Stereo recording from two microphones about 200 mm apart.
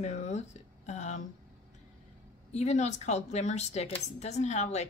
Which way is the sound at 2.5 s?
35° left (ahead or behind).